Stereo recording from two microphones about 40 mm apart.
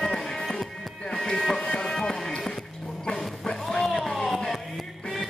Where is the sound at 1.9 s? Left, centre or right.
Centre.